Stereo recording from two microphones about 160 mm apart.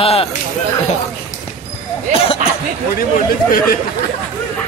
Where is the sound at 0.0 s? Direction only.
40° left (ahead or behind).